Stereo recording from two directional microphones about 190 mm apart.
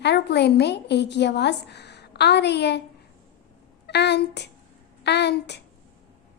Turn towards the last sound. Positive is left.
turn(degrees=60)  # may be behind; listen again after turning